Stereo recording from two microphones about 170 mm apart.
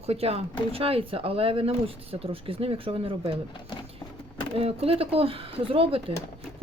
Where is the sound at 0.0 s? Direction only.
35° right (ahead or behind).